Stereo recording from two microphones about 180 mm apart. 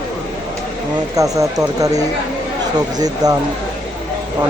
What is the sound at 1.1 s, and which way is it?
Speech, 20° right (ahead or behind).